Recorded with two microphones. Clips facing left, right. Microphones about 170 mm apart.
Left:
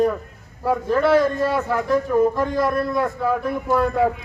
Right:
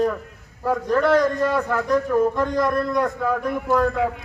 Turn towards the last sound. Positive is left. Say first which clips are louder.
# even
turn(degrees=10)  # may be behind; listen again after turning